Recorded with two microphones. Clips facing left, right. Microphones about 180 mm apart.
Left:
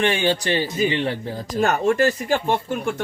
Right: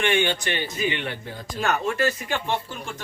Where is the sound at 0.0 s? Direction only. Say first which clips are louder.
Left 3 dB; 35° left (ahead or behind).